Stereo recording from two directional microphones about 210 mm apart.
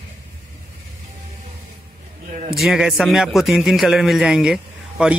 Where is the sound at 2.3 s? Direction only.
40° right (ahead or behind).